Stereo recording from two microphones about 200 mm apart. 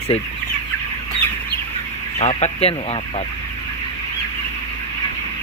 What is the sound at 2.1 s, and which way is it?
Speech, 30° left (ahead or behind).